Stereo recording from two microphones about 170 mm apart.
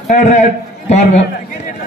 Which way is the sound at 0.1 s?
45° left (ahead or behind).